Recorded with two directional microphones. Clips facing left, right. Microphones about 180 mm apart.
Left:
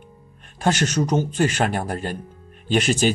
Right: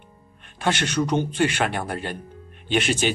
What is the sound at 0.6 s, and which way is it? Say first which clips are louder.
Speech: left 2 dB; 40° left (ahead or behind).